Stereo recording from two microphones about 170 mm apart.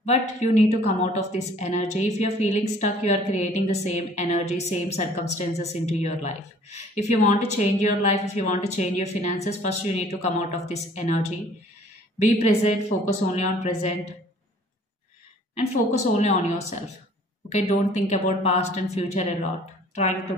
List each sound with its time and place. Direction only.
0.0 s a woman's voice: 40° left (ahead or behind)
15.5 s a woman's voice: 40° left (ahead or behind)
17.5 s a woman's voice: 40° left (ahead or behind)